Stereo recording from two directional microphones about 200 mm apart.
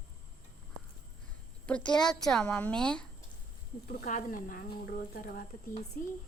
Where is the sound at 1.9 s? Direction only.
5° left (ahead or behind).